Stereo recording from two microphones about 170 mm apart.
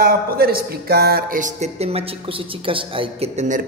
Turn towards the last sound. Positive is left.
turn(degrees=-45)  # may be behind; listen again after turning